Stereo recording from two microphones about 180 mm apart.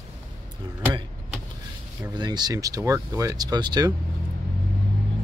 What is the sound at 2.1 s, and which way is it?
Speech, 25° right (ahead or behind).